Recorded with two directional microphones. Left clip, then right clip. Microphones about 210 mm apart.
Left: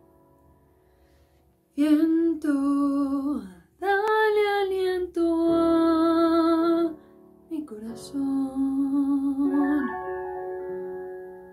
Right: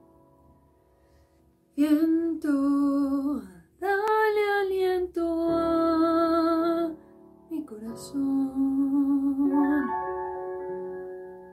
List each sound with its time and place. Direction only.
1.8 s female singing: centre (ahead or behind)
7.4 s music: centre (ahead or behind)
9.8 s music: 35° right (ahead or behind)